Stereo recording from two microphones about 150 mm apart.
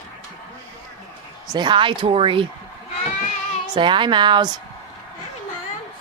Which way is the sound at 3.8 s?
30° right (ahead or behind).